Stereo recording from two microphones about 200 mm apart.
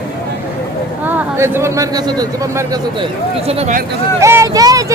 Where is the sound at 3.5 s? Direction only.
35° right (ahead or behind).